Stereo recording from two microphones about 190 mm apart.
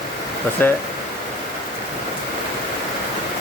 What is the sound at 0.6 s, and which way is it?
Speech, 10° left (ahead or behind).